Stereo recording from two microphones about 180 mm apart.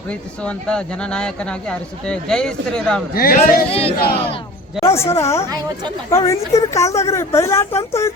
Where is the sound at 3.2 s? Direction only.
55° left (ahead or behind).